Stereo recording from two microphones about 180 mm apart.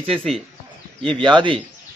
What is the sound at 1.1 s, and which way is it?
Speech, 25° right (ahead or behind).